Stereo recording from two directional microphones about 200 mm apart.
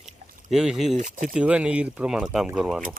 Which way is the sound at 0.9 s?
40° right (ahead or behind).